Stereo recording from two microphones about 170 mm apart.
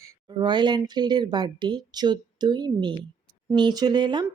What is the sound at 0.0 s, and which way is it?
Speech, 20° right (ahead or behind).